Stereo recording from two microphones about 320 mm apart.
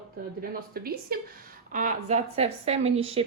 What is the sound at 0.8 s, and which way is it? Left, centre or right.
Speech, right.